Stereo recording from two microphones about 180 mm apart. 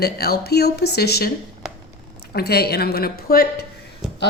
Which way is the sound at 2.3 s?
60° left (ahead or behind).